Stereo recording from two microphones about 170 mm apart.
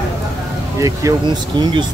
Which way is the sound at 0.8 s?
20° right (ahead or behind).